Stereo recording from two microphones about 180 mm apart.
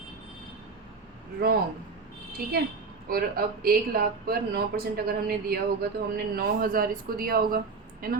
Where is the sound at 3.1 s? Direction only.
55° right (ahead or behind).